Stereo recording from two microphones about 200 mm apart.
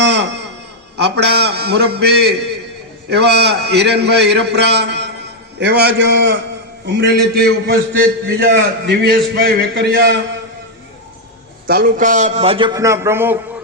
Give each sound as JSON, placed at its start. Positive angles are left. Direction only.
{"t": 0.0, "sound": "a sound", "side_deg": -60}
{"t": 0.9, "sound": "a man's voice", "side_deg": -55}
{"t": 11.6, "sound": "a man's voice", "side_deg": -45}